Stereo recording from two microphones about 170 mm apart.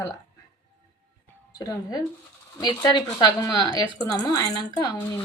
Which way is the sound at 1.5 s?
20° left (ahead or behind).